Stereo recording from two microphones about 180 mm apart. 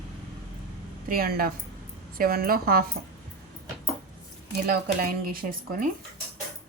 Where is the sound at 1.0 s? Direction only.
55° right (ahead or behind).